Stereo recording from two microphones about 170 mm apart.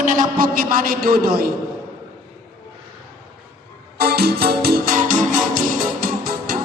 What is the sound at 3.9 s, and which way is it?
Music, 65° right (ahead or behind).